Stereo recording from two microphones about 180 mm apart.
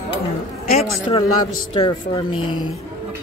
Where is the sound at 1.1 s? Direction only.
25° left (ahead or behind).